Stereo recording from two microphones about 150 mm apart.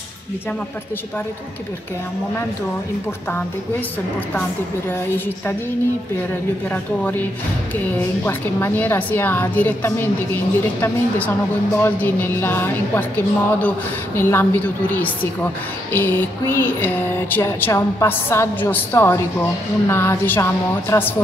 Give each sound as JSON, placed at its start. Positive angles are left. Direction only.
{"t": 6.7, "sound": "a woman's voice", "side_deg": 10}
{"t": 8.3, "sound": "a woman's voice", "side_deg": 15}